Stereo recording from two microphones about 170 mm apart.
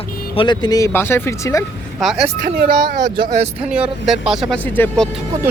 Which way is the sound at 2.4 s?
60° right (ahead or behind).